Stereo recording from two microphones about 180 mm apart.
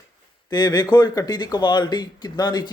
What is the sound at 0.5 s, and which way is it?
Speech, 20° left (ahead or behind).